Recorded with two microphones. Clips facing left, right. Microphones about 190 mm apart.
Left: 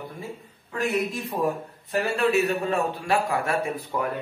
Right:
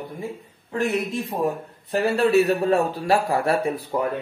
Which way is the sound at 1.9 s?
35° right (ahead or behind).